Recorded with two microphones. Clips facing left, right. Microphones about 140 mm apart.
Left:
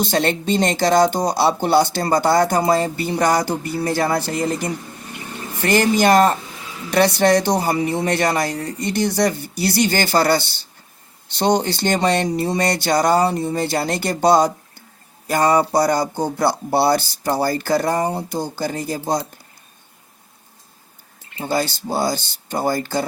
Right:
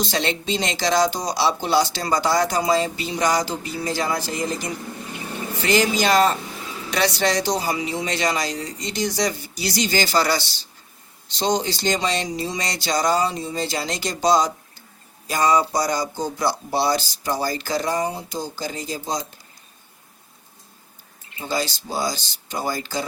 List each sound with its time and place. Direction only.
0.0 s speech: 50° left (ahead or behind)
21.4 s speech: 55° left (ahead or behind)